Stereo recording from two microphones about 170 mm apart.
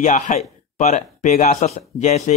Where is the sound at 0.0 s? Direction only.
45° left (ahead or behind).